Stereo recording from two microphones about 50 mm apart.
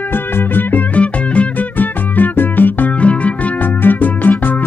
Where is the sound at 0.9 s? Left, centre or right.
Left.